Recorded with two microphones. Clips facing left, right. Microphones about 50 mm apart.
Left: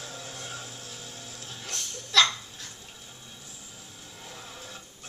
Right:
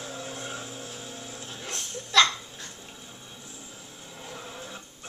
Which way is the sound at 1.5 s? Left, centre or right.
Centre.